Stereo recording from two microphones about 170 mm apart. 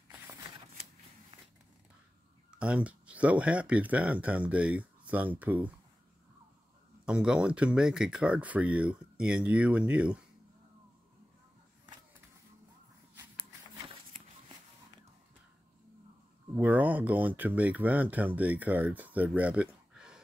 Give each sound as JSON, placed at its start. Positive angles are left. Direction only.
{"t": 0.1, "sound": "shuffling cards", "side_deg": -15}
{"t": 1.3, "sound": "a sound", "side_deg": -30}
{"t": 2.6, "sound": "speech", "side_deg": -5}
{"t": 7.1, "sound": "speech", "side_deg": -5}
{"t": 13.1, "sound": "a sound", "side_deg": -10}
{"t": 16.5, "sound": "speech", "side_deg": -10}